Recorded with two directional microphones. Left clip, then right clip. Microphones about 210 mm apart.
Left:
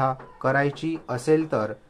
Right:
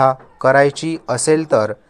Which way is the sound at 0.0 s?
55° right (ahead or behind).